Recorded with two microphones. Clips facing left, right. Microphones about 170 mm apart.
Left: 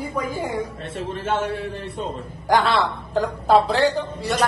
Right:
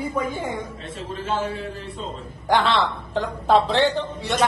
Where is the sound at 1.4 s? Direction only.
70° left (ahead or behind).